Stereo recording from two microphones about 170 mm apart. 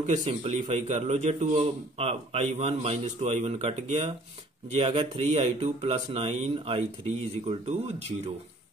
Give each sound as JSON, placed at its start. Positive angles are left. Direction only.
{"t": 0.0, "sound": "speech", "side_deg": -40}